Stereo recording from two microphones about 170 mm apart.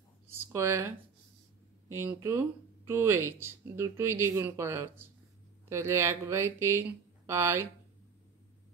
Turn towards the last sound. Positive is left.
turn(degrees=-15)  # may be behind; listen again after turning